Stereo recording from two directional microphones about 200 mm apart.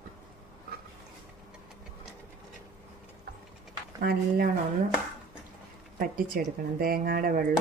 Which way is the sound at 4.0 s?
50° right (ahead or behind).